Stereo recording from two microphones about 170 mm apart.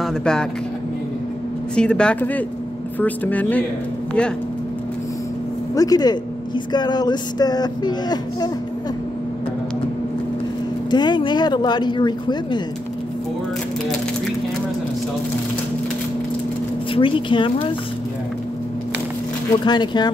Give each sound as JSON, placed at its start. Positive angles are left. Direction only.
{"t": 0.0, "sound": "speech", "side_deg": 5}
{"t": 1.8, "sound": "speech", "side_deg": 5}
{"t": 5.8, "sound": "speech", "side_deg": 20}
{"t": 10.9, "sound": "speech", "side_deg": 25}
{"t": 16.9, "sound": "speech", "side_deg": 30}
{"t": 19.6, "sound": "speech", "side_deg": 25}